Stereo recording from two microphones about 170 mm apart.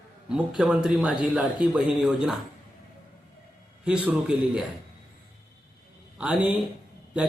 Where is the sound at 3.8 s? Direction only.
5° right (ahead or behind).